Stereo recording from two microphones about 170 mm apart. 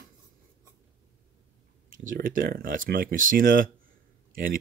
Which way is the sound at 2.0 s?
55° right (ahead or behind).